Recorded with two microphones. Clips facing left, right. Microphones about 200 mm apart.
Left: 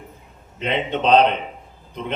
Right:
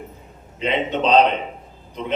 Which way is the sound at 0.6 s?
55° left (ahead or behind).